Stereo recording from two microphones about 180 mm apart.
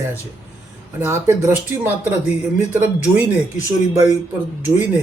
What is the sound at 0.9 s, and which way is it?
Speech, 15° right (ahead or behind).